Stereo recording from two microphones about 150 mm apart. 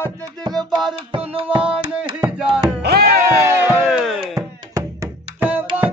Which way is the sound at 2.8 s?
90° right.